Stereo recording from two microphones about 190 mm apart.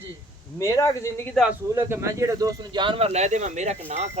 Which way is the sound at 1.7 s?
15° right (ahead or behind).